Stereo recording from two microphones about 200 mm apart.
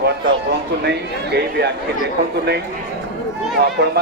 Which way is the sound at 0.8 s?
55° right (ahead or behind).